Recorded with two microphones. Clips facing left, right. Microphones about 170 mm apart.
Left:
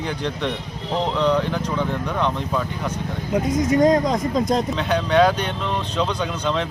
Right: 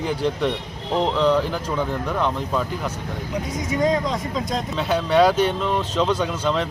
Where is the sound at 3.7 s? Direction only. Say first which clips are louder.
Left 4 dB; 45° left (ahead or behind).